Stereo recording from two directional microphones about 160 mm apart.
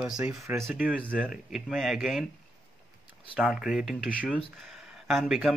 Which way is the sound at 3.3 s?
5° right (ahead or behind).